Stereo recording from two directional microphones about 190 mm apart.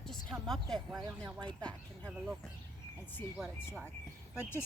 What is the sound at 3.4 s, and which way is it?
Speech, 5° right (ahead or behind).